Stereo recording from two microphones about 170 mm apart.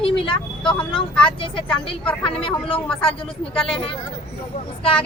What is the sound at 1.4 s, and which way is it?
Speech, 30° left (ahead or behind).